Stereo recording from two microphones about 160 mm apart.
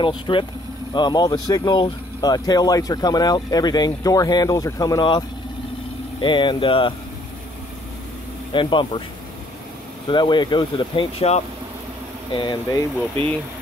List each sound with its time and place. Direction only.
0.0 s speech: 30° left (ahead or behind)
6.2 s speech: 30° left (ahead or behind)
8.5 s speech: 30° left (ahead or behind)
10.0 s speech: 30° left (ahead or behind)
12.4 s speech: 25° left (ahead or behind)